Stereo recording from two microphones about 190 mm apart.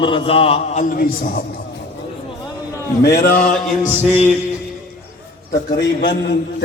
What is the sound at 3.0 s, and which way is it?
Speech, 55° left (ahead or behind).